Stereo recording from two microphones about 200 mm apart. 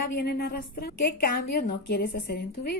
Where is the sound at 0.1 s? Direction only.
50° left (ahead or behind).